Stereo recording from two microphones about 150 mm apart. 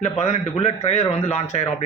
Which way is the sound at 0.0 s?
50° left (ahead or behind).